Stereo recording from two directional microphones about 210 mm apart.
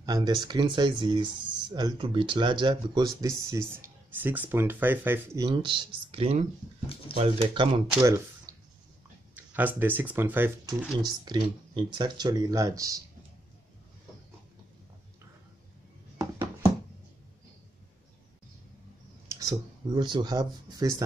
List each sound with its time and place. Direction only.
0.0 s speech: 20° right (ahead or behind)
7.9 s speech: 15° right (ahead or behind)
9.3 s a sound: 10° right (ahead or behind)
9.8 s speech: 10° right (ahead or behind)
11.0 s speech: 20° right (ahead or behind)
16.2 s a sound: 15° right (ahead or behind)
19.2 s speech: 15° right (ahead or behind)